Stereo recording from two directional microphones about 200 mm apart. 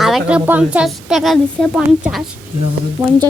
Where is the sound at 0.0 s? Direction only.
5° right (ahead or behind).